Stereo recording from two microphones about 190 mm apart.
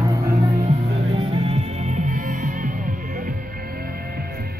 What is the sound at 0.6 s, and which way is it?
Music, 30° right (ahead or behind).